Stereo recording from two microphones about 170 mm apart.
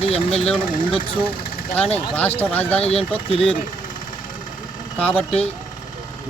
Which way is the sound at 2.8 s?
35° left (ahead or behind).